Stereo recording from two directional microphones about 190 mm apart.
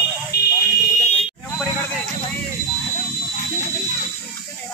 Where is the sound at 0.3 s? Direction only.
55° left (ahead or behind).